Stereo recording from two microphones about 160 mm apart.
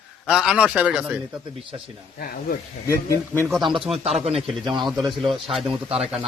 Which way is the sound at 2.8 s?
20° left (ahead or behind).